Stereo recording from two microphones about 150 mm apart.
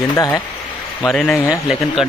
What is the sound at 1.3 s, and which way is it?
Speech, 20° left (ahead or behind).